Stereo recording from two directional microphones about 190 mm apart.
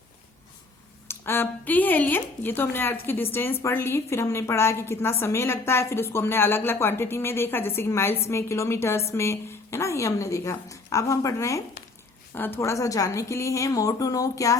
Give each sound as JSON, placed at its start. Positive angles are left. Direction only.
{"t": 1.0, "sound": "speech", "side_deg": 10}